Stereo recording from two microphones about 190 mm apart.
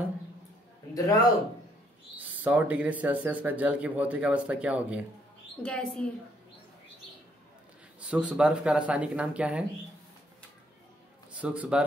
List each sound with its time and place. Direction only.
0.9 s a man's voice: 20° left (ahead or behind)
2.4 s speech: 10° right (ahead or behind)
5.6 s speech: 5° left (ahead or behind)
8.0 s speech: 5° right (ahead or behind)
11.3 s speech: 5° right (ahead or behind)